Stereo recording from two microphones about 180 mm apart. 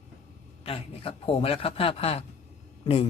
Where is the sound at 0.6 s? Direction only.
35° left (ahead or behind).